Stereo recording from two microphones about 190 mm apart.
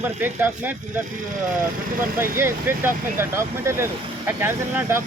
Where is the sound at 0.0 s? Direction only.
10° right (ahead or behind).